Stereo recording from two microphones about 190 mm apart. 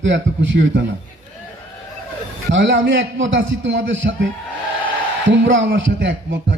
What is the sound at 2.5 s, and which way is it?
A man's voice, 75° right (ahead or behind).